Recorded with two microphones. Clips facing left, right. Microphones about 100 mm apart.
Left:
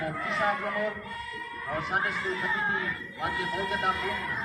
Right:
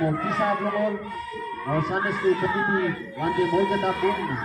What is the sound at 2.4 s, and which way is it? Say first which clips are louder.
Speech: right 7 dB; 30° right (ahead or behind).